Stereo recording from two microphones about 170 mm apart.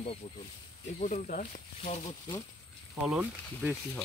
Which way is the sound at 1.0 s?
45° left (ahead or behind).